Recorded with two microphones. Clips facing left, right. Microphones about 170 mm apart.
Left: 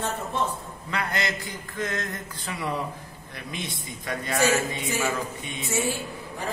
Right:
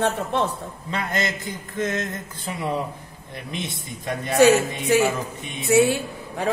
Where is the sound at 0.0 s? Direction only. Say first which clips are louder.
Right 6 dB; 75° right (ahead or behind).